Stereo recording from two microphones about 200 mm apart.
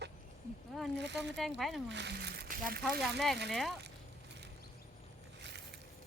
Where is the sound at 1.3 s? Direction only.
Centre (ahead or behind).